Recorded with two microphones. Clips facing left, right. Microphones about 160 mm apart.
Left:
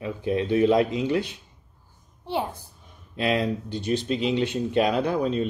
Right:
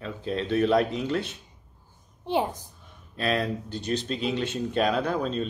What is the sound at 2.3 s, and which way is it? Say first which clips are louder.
Speech: right 2 dB; 15° right (ahead or behind).